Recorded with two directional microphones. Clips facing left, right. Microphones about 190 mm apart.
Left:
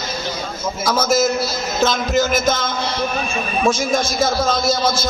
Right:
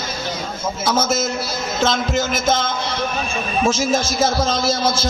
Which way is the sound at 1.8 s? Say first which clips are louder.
Left 2 dB; 25° right (ahead or behind).